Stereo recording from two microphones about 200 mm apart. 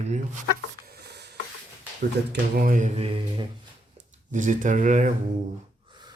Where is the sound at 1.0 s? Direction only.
55° right (ahead or behind).